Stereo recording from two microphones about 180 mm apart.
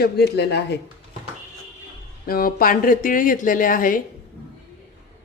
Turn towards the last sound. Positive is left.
turn(degrees=50)  # may be behind; listen again after turning